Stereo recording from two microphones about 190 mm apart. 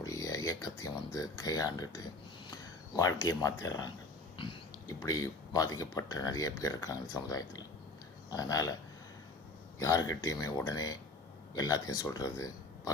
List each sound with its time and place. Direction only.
0.0 s speech: 20° left (ahead or behind)
2.5 s a sound: 20° left (ahead or behind)
3.2 s speech: 20° left (ahead or behind)
9.7 s a man's voice: 15° left (ahead or behind)